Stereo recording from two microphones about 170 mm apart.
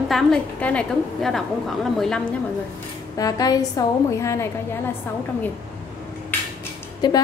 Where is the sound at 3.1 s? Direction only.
20° left (ahead or behind).